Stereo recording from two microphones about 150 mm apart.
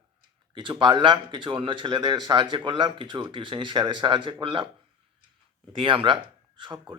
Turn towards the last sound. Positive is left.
turn(degrees=-30)  # may be behind; listen again after turning